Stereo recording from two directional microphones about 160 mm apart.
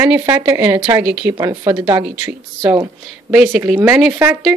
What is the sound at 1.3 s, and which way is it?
Speech, 20° right (ahead or behind).